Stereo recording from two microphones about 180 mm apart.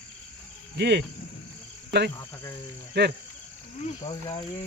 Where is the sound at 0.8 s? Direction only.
70° right (ahead or behind).